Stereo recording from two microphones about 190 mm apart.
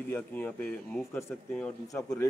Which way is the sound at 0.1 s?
5° left (ahead or behind).